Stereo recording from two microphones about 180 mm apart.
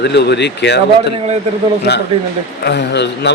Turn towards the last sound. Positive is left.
turn(degrees=70)  # may be behind; listen again after turning